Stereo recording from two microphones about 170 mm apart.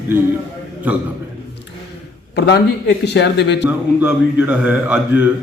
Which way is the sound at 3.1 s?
85° left.